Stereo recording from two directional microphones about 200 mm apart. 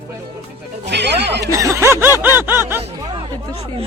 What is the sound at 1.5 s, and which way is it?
Snicker, 15° right (ahead or behind).